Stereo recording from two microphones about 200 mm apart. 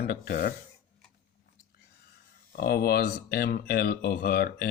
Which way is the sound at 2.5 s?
50° left (ahead or behind).